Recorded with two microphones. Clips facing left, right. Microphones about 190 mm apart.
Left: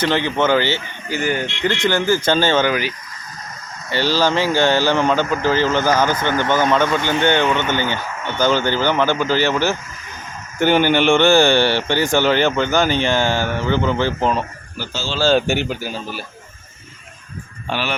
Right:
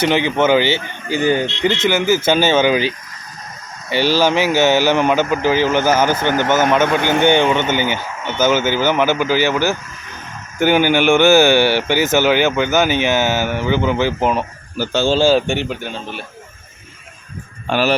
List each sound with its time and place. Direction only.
0.0 s speech: 15° right (ahead or behind)
1.8 s speech: 5° right (ahead or behind)
6.8 s speech: 55° right (ahead or behind)
7.2 s speech: 10° right (ahead or behind)
14.8 s speech: 50° right (ahead or behind)
15.3 s speech: centre (ahead or behind)
17.7 s speech: 45° right (ahead or behind)